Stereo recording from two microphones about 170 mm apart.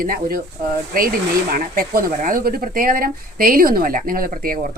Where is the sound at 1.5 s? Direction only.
60° right (ahead or behind).